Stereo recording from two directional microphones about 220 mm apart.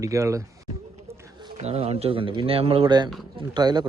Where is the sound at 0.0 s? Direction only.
15° right (ahead or behind).